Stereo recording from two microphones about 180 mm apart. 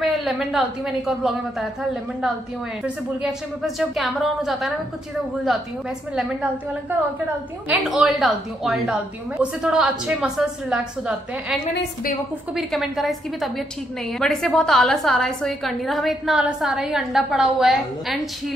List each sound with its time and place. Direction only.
0.0 s a woman's voice: centre (ahead or behind)
7.6 s a woman's voice: 5° right (ahead or behind)
11.7 s a woman's voice: 50° left (ahead or behind)
12.5 s a woman's voice: centre (ahead or behind)